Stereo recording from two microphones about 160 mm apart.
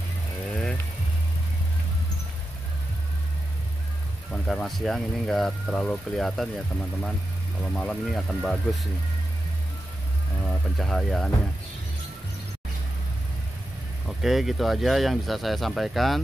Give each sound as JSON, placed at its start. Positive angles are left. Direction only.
{"t": 4.3, "sound": "speech", "side_deg": 5}
{"t": 10.4, "sound": "speech", "side_deg": 5}
{"t": 14.0, "sound": "speech", "side_deg": 0}